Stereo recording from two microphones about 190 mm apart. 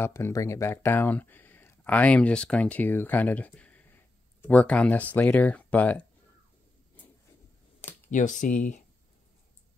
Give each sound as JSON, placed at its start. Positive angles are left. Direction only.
{"t": 0.0, "sound": "speech", "side_deg": 15}
{"t": 8.1, "sound": "speech", "side_deg": 45}